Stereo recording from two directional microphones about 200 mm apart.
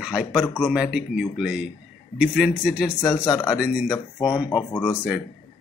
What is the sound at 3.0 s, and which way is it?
Speech, 20° left (ahead or behind).